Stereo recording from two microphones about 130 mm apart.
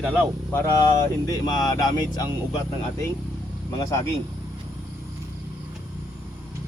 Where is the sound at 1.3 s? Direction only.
30° left (ahead or behind).